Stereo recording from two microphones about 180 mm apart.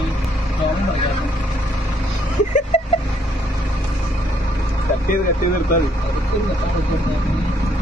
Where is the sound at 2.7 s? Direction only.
40° left (ahead or behind).